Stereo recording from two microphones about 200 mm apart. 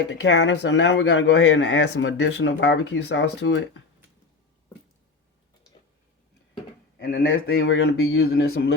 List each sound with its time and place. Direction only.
0.1 s a man's voice: 60° left (ahead or behind)
7.0 s a man's voice: 55° left (ahead or behind)
8.1 s speech: 85° left